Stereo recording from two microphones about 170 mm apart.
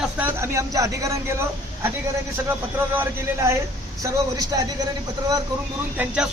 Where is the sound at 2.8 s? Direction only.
15° right (ahead or behind).